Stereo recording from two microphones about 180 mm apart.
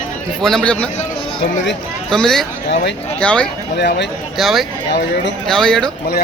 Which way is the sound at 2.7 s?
80° left.